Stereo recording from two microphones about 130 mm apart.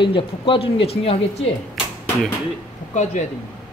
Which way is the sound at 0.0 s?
40° left (ahead or behind).